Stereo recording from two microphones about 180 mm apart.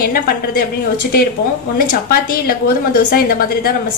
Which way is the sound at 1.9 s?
55° left (ahead or behind).